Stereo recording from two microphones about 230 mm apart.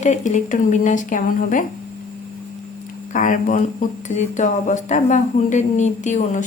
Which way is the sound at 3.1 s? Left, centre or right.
Left.